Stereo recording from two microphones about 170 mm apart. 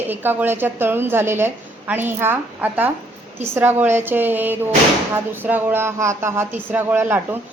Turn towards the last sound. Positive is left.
turn(degrees=-10)  # may be behind; listen again after turning